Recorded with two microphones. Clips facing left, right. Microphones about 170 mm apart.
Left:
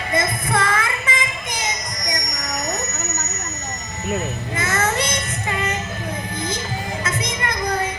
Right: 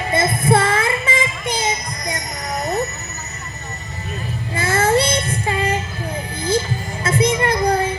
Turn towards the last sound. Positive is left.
turn(degrees=-30)  # may be behind; listen again after turning